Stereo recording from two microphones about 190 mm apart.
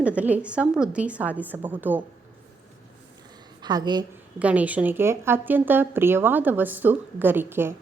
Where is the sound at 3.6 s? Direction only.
20° right (ahead or behind).